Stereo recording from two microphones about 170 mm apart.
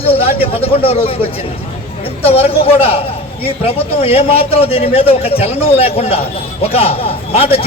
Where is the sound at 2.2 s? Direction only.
35° left (ahead or behind).